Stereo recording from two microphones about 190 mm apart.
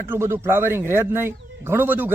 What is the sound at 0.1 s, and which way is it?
Speech, 15° right (ahead or behind).